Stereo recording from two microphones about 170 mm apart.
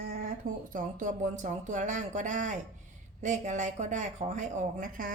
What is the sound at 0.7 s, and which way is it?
Speech, 50° right (ahead or behind).